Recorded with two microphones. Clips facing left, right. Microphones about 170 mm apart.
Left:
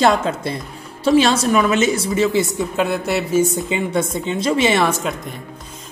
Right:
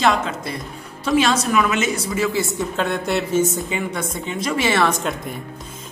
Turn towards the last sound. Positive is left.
turn(degrees=5)  # may be behind; listen again after turning